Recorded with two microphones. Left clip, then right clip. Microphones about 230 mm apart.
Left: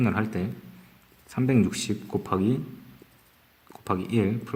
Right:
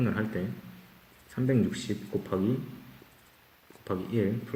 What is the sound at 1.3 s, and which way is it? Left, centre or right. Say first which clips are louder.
Speech: left 4 dB; left.